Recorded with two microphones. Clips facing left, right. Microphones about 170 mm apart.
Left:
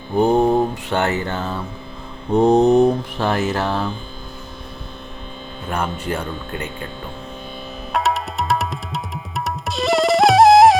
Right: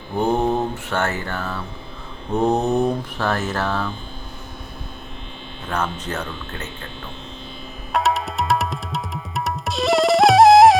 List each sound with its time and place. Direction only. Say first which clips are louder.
0.2 s mantra: left 4 dB; 15° left (ahead or behind)
0.9 s music: left 3 dB; 15° left (ahead or behind)
2.3 s mantra: left 6 dB; 15° left (ahead or behind)
5.6 s mantra: left 2 dB; 10° left (ahead or behind)
7.9 s music: even; centre (ahead or behind)